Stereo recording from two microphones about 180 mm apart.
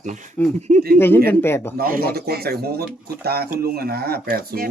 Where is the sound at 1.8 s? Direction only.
55° right (ahead or behind).